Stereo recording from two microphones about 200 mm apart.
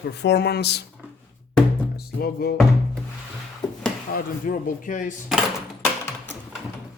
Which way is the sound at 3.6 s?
20° left (ahead or behind).